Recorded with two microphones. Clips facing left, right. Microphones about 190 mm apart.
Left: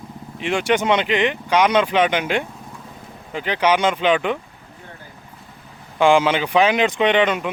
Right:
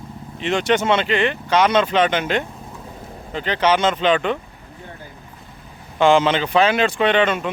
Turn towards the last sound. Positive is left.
turn(degrees=15)  # may be behind; listen again after turning